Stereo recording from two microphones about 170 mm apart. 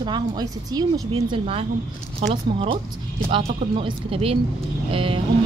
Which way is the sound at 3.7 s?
35° right (ahead or behind).